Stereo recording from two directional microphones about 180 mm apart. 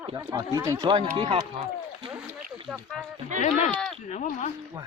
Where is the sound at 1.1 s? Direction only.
35° right (ahead or behind).